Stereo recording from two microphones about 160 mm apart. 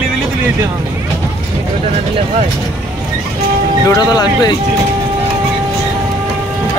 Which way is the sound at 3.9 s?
25° left (ahead or behind).